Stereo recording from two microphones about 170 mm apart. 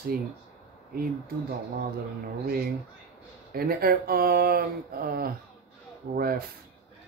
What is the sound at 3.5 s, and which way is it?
Speech, 60° right (ahead or behind).